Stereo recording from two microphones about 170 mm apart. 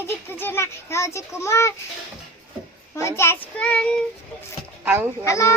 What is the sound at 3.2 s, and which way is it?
Speech, 10° left (ahead or behind).